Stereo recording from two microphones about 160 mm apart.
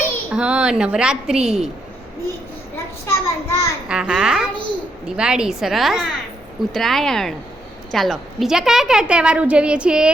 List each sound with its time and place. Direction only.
0.3 s a woman's voice: 5° right (ahead or behind)
3.1 s a child's voice: 15° left (ahead or behind)
3.8 s a woman's voice: 5° right (ahead or behind)